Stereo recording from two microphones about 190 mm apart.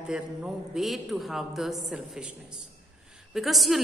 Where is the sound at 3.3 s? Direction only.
Centre (ahead or behind).